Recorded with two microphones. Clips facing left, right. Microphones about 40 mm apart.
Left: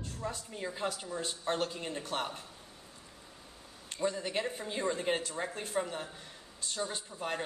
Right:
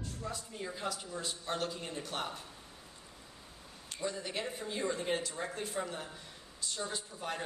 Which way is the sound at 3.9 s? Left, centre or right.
Left.